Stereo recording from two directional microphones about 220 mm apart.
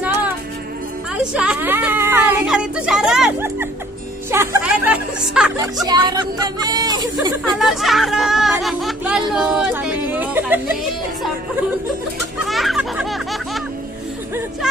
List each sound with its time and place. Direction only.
0.0 s music: 5° right (ahead or behind)
1.2 s speech: 5° right (ahead or behind)
5.9 s speech: 20° right (ahead or behind)
7.5 s speech: centre (ahead or behind)
12.4 s music: centre (ahead or behind)